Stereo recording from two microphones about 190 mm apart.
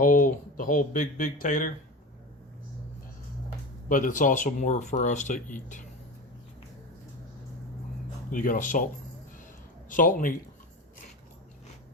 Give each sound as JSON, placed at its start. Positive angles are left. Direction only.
{"t": 0.0, "sound": "speech", "side_deg": 45}
{"t": 3.8, "sound": "speech", "side_deg": 45}
{"t": 8.3, "sound": "speech", "side_deg": 45}
{"t": 9.9, "sound": "speech", "side_deg": 45}